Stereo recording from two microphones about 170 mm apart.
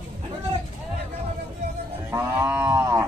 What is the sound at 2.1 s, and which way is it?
Cattle, 15° right (ahead or behind).